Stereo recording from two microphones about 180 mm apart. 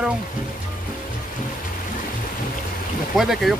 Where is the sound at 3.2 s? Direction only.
Centre (ahead or behind).